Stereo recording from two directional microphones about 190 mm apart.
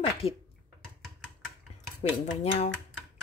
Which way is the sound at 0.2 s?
30° left (ahead or behind).